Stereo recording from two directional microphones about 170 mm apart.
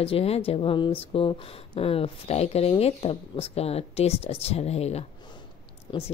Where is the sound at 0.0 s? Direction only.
35° left (ahead or behind).